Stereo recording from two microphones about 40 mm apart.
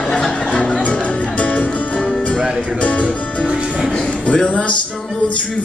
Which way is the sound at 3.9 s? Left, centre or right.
Left.